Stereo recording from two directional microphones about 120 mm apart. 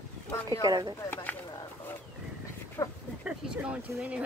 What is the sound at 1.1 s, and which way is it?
Speech, 15° left (ahead or behind).